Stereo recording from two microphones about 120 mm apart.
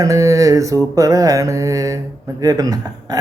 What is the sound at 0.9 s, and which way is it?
Speech, 30° right (ahead or behind).